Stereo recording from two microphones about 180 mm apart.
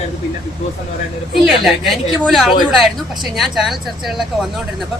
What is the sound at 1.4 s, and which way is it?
Speech, centre (ahead or behind).